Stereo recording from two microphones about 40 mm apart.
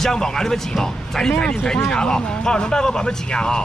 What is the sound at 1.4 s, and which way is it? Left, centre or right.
A man's voice, left.